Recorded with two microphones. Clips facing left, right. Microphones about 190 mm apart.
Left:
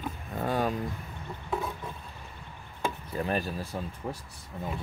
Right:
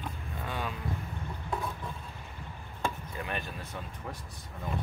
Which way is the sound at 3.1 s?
35° left (ahead or behind).